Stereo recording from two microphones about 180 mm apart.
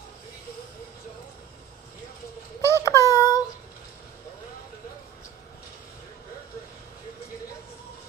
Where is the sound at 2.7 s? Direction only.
15° left (ahead or behind).